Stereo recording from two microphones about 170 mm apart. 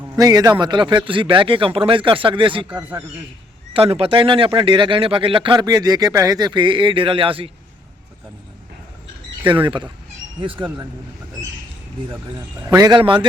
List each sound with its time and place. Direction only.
0.0 s a man's voice: 20° right (ahead or behind)
3.7 s speech: 35° right (ahead or behind)
9.5 s speech: 30° right (ahead or behind)
12.0 s speech: 20° right (ahead or behind)